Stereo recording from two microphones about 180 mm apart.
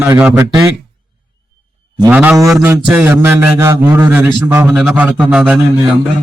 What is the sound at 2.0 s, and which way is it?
A man's voice, 10° right (ahead or behind).